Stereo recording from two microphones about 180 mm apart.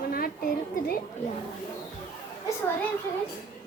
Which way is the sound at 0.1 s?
55° left (ahead or behind).